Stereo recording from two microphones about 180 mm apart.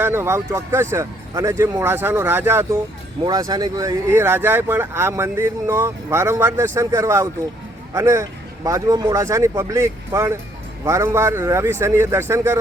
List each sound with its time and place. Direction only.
0.0 s speech: 15° right (ahead or behind)